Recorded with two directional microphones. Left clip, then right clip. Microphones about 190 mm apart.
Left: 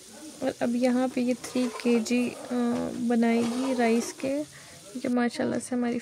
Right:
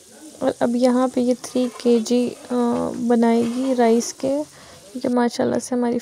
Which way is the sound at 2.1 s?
10° left (ahead or behind).